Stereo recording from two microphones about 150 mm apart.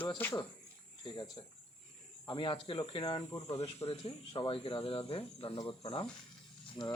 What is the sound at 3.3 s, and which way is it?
Speech, 20° left (ahead or behind).